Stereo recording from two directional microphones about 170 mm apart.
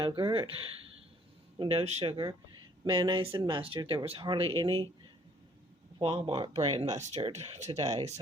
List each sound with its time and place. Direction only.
0.0 s speech: 30° right (ahead or behind)
1.5 s speech: 35° right (ahead or behind)
6.0 s speech: 35° right (ahead or behind)